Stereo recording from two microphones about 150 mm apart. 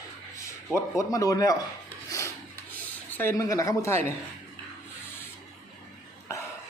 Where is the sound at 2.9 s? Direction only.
10° left (ahead or behind).